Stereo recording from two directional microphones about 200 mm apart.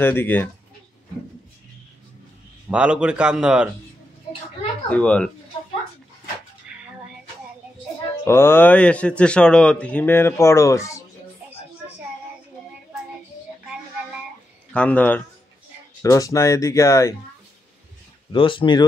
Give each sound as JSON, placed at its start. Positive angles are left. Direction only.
{"t": 0.0, "sound": "speech", "side_deg": 10}
{"t": 2.7, "sound": "a man's voice", "side_deg": -5}
{"t": 4.8, "sound": "a man's voice", "side_deg": 5}
{"t": 8.3, "sound": "speech", "side_deg": 10}
{"t": 14.7, "sound": "speech", "side_deg": 5}
{"t": 18.3, "sound": "speech", "side_deg": 25}